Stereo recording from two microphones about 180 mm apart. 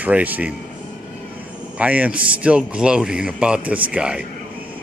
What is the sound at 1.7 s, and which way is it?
A man's voice, 10° right (ahead or behind).